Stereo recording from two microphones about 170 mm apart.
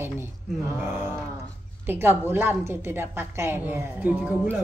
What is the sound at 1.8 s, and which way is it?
A woman's voice, 10° right (ahead or behind).